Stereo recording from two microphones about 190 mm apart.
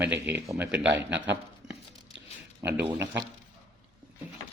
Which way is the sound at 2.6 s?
10° right (ahead or behind).